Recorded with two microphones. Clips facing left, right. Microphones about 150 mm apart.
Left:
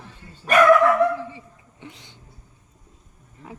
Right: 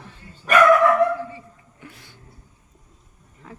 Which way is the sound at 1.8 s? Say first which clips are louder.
Left 2 dB; 20° left (ahead or behind).